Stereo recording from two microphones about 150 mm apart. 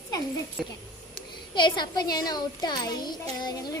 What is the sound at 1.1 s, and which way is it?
Speech, 30° left (ahead or behind).